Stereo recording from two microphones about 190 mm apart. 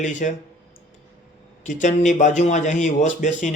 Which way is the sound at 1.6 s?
40° left (ahead or behind).